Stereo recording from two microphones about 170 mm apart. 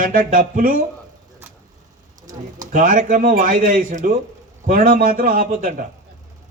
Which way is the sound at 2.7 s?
50° right (ahead or behind).